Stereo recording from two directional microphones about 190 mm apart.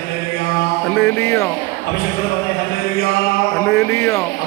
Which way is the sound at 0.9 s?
10° left (ahead or behind).